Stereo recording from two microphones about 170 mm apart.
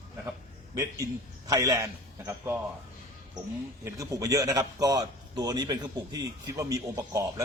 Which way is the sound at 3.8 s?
20° right (ahead or behind).